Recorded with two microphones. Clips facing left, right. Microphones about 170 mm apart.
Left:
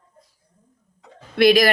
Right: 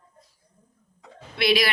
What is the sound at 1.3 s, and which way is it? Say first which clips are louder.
Speech: left 8 dB; 50° left (ahead or behind).